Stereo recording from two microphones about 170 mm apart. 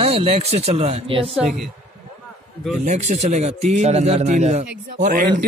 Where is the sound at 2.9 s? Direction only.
45° right (ahead or behind).